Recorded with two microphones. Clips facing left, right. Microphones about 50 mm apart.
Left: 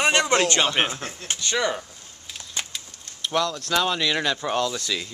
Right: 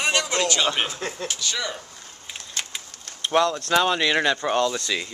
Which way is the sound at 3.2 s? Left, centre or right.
Right.